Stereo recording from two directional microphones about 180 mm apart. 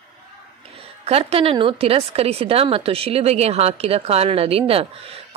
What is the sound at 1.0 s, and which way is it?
Speech, 35° right (ahead or behind).